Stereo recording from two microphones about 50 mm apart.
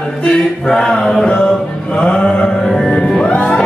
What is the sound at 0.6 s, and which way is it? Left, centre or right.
Mantra, centre.